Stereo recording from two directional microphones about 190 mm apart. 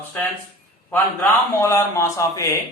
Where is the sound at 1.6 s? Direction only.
15° left (ahead or behind).